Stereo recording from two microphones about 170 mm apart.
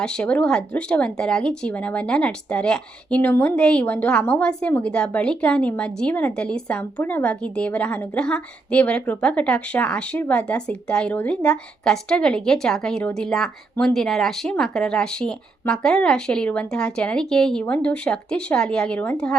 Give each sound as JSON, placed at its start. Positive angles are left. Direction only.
{"t": 0.0, "sound": "speech", "side_deg": 5}